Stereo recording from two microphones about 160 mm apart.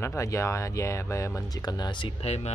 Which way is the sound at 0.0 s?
20° left (ahead or behind).